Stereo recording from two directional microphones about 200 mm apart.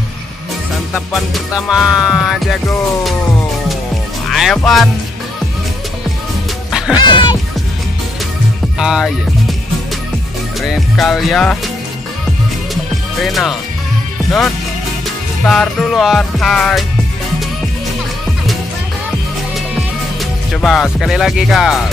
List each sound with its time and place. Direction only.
0.9 s music: centre (ahead or behind)
4.3 s speech: centre (ahead or behind)
7.0 s music: 20° left (ahead or behind)
8.7 s speech: centre (ahead or behind)
10.6 s music: centre (ahead or behind)
13.2 s music: centre (ahead or behind)
15.4 s music: centre (ahead or behind)
20.6 s music: centre (ahead or behind)